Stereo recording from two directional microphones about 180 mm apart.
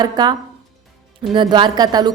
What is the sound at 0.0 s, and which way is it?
Speech, 20° right (ahead or behind).